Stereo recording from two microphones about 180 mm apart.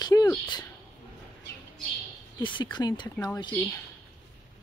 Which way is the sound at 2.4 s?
25° left (ahead or behind).